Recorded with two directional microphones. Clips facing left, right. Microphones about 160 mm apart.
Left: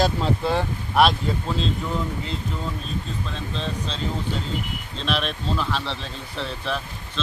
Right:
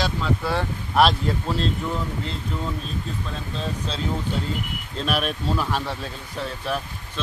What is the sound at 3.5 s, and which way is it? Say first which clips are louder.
Speech: right 1 dB; 5° right (ahead or behind).